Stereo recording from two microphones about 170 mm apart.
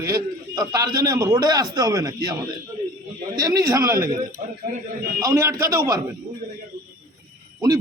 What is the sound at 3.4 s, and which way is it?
A man's voice, 20° right (ahead or behind).